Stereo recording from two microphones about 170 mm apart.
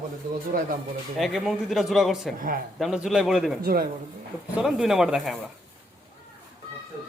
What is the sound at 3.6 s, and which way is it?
Speech, 60° right (ahead or behind).